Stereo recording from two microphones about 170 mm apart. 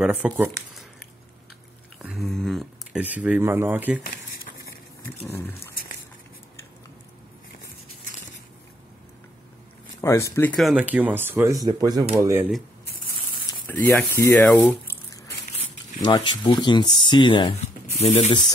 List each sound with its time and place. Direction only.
0.0 s speech: 10° right (ahead or behind)
2.0 s a sound: 10° right (ahead or behind)
2.2 s a sound: centre (ahead or behind)
5.2 s speech: 10° left (ahead or behind)
10.0 s speech: 15° left (ahead or behind)
10.5 s speech: centre (ahead or behind)
13.8 s speech: 15° left (ahead or behind)
16.0 s speech: 30° left (ahead or behind)
18.0 s speech: 40° left (ahead or behind)